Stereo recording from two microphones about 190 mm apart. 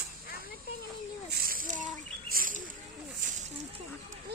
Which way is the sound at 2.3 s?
45° right (ahead or behind).